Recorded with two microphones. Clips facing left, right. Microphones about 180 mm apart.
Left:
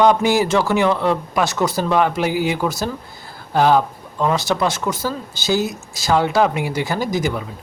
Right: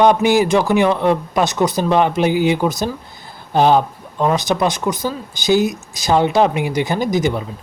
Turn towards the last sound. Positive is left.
turn(degrees=-20)  # may be behind; listen again after turning